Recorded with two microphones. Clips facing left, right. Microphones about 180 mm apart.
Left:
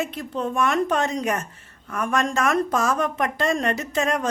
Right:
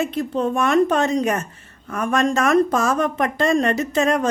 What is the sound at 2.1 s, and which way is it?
A woman's voice, 25° right (ahead or behind).